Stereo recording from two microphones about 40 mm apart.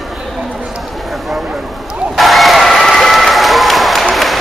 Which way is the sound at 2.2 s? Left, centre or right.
Centre.